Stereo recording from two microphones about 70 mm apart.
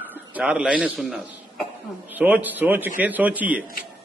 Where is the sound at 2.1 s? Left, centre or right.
Right.